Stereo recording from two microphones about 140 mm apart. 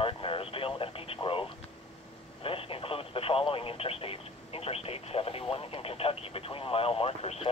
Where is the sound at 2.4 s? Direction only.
40° left (ahead or behind).